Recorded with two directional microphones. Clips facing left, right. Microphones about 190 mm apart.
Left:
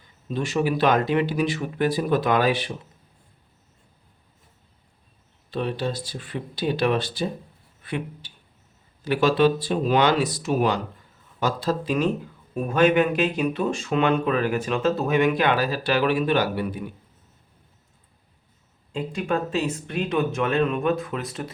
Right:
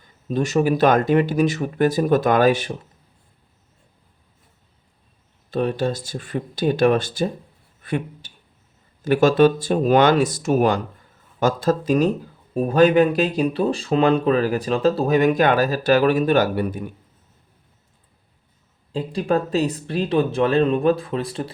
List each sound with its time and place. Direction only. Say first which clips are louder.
0.3 s speech: right 5 dB; 45° right (ahead or behind)
5.5 s speech: right 5 dB; 45° right (ahead or behind)
18.9 s speech: right 4 dB; 35° right (ahead or behind)